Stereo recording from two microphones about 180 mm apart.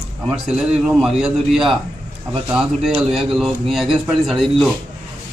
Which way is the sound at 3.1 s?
Centre (ahead or behind).